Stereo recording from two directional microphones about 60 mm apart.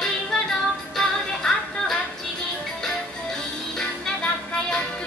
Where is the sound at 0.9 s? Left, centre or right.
Centre.